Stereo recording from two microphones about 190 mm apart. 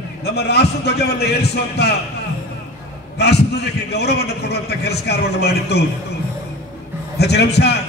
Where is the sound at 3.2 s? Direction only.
60° left (ahead or behind).